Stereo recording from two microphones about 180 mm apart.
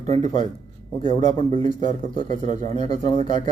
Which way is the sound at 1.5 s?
40° right (ahead or behind).